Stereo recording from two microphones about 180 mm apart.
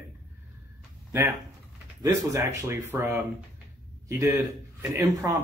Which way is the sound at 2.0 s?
15° right (ahead or behind).